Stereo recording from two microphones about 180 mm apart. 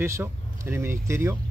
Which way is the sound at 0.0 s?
15° right (ahead or behind).